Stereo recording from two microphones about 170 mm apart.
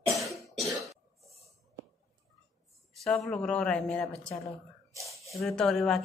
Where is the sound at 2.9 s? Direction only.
Centre (ahead or behind).